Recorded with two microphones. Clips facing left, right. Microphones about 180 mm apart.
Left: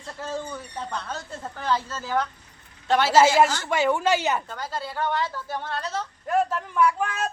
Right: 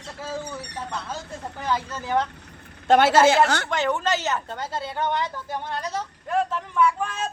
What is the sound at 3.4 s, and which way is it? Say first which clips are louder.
Speech: right 4 dB; 65° right (ahead or behind).